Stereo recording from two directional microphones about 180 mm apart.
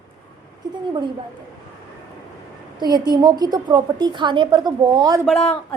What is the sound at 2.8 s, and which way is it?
A woman's voice, 20° right (ahead or behind).